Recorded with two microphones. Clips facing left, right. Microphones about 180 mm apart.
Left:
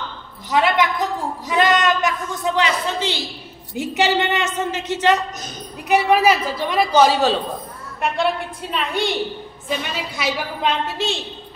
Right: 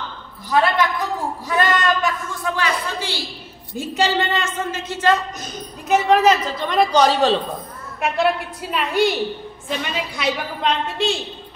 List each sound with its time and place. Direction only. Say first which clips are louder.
0.5 s a woman's voice: even; 20° left (ahead or behind)
1.5 s a sound: left 2 dB; 20° left (ahead or behind)
3.7 s a man's voice: left 1 dB; 20° left (ahead or behind)